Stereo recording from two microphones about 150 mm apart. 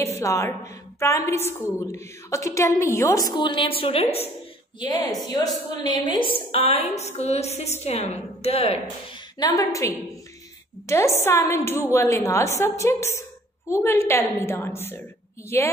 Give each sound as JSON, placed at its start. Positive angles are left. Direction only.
{"t": 0.0, "sound": "a woman's voice", "side_deg": 20}
{"t": 4.7, "sound": "a woman's voice", "side_deg": 25}
{"t": 9.4, "sound": "a woman's voice", "side_deg": 25}